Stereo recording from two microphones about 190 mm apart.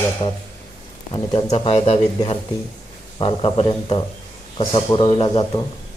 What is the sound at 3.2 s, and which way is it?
Mantra, 30° left (ahead or behind).